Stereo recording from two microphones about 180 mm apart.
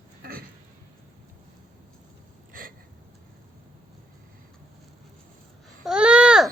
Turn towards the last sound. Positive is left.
turn(degrees=-5)  # may be behind; listen again after turning